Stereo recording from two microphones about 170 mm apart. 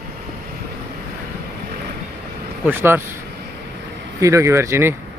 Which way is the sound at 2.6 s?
15° right (ahead or behind).